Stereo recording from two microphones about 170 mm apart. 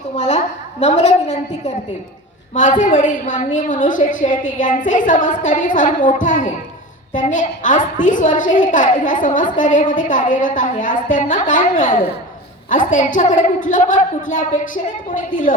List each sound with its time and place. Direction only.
0.2 s a woman's voice: 40° left (ahead or behind)
12.9 s a woman's voice: 50° left (ahead or behind)